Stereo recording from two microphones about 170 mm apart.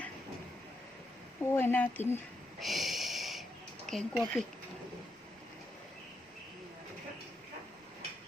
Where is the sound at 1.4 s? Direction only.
15° left (ahead or behind).